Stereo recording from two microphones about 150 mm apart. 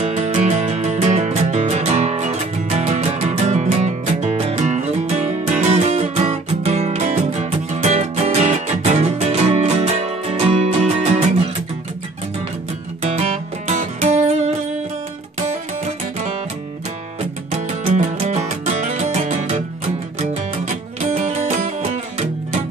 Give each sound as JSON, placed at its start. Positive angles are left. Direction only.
{"t": 0.0, "sound": "music", "side_deg": -50}
{"t": 13.0, "sound": "music", "side_deg": -45}
{"t": 17.5, "sound": "music", "side_deg": -55}